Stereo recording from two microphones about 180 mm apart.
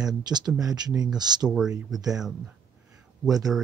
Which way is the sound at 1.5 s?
5° right (ahead or behind).